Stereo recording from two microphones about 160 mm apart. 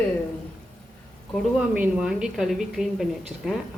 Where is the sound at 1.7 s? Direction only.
5° right (ahead or behind).